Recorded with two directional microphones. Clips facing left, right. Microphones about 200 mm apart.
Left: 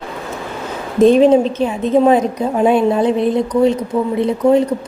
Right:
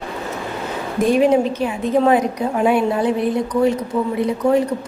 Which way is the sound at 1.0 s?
25° left (ahead or behind).